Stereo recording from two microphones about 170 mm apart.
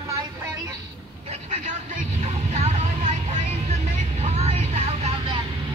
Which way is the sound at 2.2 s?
40° right (ahead or behind).